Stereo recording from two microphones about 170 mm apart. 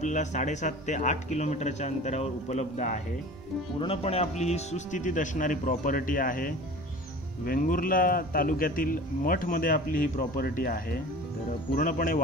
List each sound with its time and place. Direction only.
0.0 s a man's voice: 45° left (ahead or behind)